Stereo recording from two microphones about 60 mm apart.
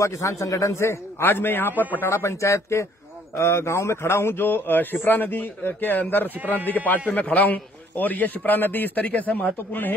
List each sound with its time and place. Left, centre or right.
0.0 s a man's voice: left
1.2 s a man's voice: left
2.0 s a man's voice: left